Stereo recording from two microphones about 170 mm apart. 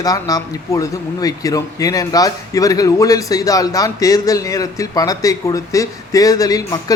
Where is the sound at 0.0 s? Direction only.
20° left (ahead or behind).